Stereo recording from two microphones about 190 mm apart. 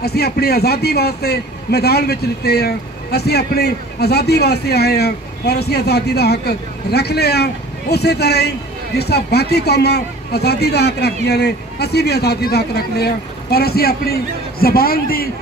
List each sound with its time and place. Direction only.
0.0 s a man's voice: 55° left (ahead or behind)